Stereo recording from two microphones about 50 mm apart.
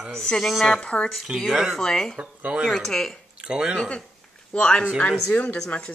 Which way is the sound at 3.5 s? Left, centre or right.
Centre.